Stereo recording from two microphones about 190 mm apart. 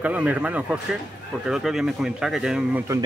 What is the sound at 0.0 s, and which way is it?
Speech, 5° right (ahead or behind).